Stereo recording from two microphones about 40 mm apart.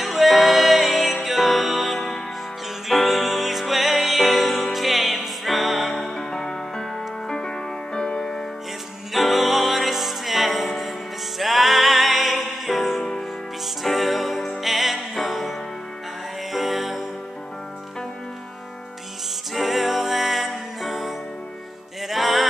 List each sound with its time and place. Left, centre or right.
0.0 s music: centre
5.9 s music: centre
9.1 s music: centre
16.5 s music: centre
19.5 s music: centre